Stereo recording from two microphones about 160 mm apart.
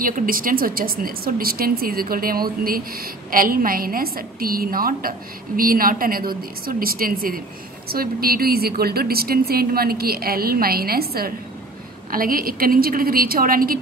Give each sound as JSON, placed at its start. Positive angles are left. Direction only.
{"t": 0.0, "sound": "a woman's voice", "side_deg": -60}